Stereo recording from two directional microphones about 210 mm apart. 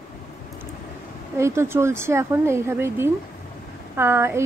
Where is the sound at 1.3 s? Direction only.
10° right (ahead or behind).